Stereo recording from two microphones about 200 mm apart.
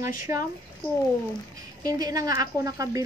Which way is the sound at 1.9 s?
20° right (ahead or behind).